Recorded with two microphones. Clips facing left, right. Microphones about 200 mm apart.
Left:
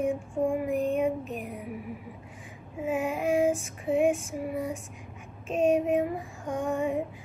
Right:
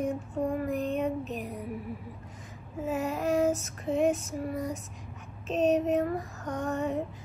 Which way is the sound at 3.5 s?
40° right (ahead or behind).